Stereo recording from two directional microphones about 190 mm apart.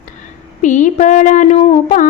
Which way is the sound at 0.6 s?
40° left (ahead or behind).